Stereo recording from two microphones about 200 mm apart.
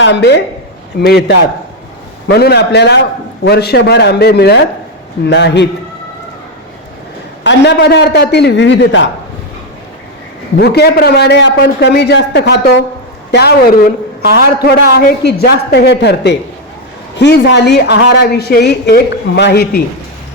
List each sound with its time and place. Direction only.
0.0 s a woman's voice: 60° left (ahead or behind)
7.4 s a woman's voice: 60° left (ahead or behind)
10.6 s a woman's voice: 55° left (ahead or behind)